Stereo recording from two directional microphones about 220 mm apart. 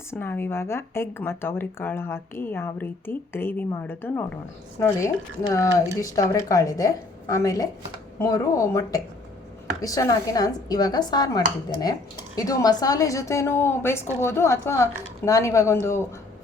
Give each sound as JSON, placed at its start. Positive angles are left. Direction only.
{"t": 0.1, "sound": "speech", "side_deg": 10}